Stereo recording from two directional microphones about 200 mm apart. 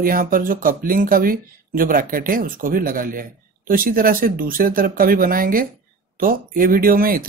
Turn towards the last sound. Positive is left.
turn(degrees=-45)  # may be behind; listen again after turning